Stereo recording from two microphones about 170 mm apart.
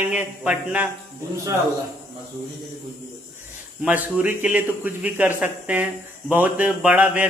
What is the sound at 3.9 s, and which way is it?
Speech, 10° right (ahead or behind).